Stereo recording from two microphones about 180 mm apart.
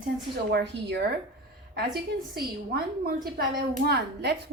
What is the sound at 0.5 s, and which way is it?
A woman's voice, 70° right (ahead or behind).